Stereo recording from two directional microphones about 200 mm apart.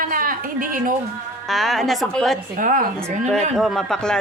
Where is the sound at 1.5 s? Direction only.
Centre (ahead or behind).